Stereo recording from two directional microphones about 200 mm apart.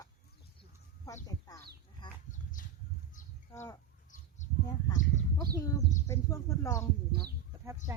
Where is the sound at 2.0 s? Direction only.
20° left (ahead or behind).